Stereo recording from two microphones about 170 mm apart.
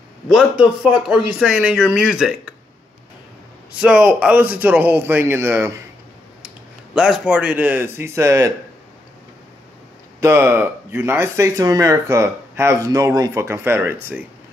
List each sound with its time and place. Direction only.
0.3 s speech: 5° right (ahead or behind)
3.8 s speech: 5° right (ahead or behind)
7.0 s speech: 5° right (ahead or behind)
10.2 s speech: 15° right (ahead or behind)